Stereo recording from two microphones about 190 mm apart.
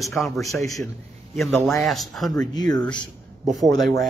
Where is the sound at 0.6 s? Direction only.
15° left (ahead or behind).